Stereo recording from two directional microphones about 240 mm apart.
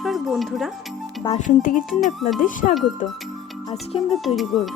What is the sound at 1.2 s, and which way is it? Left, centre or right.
Speech, left.